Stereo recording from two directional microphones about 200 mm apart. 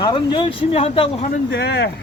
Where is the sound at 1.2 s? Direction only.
50° left (ahead or behind).